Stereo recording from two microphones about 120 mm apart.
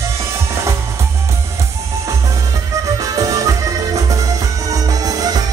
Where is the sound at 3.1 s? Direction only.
30° right (ahead or behind).